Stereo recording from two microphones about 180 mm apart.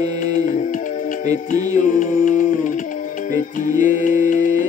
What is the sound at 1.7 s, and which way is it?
Music, 45° left (ahead or behind).